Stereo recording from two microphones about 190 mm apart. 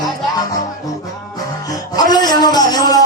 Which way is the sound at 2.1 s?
20° left (ahead or behind).